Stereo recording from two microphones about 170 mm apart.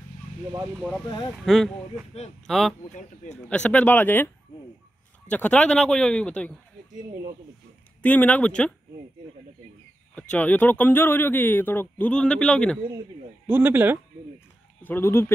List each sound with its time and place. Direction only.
1.0 s speech: 25° left (ahead or behind)
1.3 s speech: centre (ahead or behind)
5.3 s speech: 10° left (ahead or behind)
8.0 s speech: 10° left (ahead or behind)
10.3 s speech: 10° left (ahead or behind)
13.5 s speech: 10° right (ahead or behind)
14.8 s speech: 10° left (ahead or behind)